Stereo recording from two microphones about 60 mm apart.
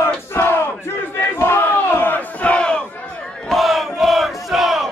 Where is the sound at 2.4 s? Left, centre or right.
Centre.